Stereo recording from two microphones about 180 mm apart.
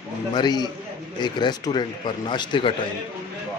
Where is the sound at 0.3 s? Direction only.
25° left (ahead or behind).